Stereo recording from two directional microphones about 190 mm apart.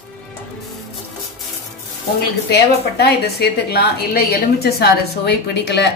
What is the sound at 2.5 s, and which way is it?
Speech, 60° left (ahead or behind).